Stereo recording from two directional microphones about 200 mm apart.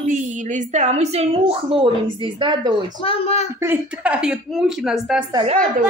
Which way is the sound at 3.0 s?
30° left (ahead or behind).